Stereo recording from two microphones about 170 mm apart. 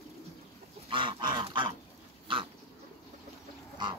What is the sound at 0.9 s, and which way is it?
Goose, 25° right (ahead or behind).